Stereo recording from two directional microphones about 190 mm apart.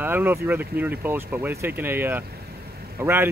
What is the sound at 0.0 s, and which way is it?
Speech, 10° right (ahead or behind).